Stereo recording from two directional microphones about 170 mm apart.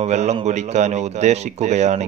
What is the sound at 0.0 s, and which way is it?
A man's voice, 40° right (ahead or behind).